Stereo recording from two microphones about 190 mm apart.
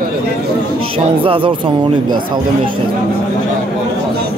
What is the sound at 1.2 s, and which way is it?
Speech, 25° right (ahead or behind).